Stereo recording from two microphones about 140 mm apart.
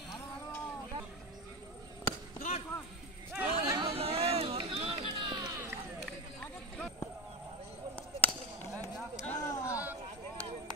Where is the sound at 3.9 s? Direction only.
45° right (ahead or behind).